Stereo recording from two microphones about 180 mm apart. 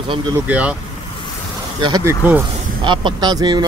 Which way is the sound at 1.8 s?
20° right (ahead or behind).